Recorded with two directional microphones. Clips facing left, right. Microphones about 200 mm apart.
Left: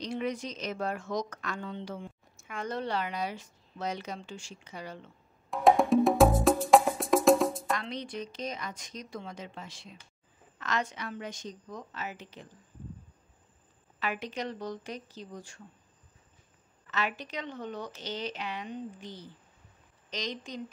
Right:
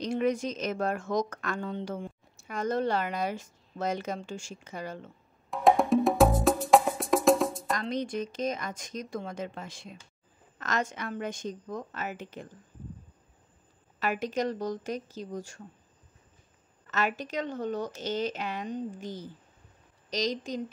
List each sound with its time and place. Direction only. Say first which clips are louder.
0.0 s a woman's voice: right 6 dB; 50° right (ahead or behind)
5.5 s wood block: even; centre (ahead or behind)
7.7 s a woman's voice: right 4 dB; 45° right (ahead or behind)
13.9 s a woman's voice: right 5 dB; 45° right (ahead or behind)
16.8 s a woman's voice: right 4 dB; 45° right (ahead or behind)